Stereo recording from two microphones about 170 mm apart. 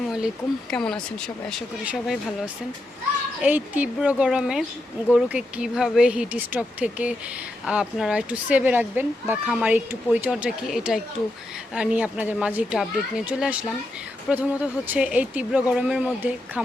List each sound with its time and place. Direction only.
0.7 s speech: 5° left (ahead or behind)
3.4 s speech: 10° right (ahead or behind)